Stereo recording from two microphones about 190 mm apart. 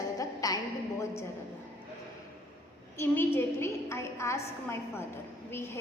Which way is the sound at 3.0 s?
10° left (ahead or behind).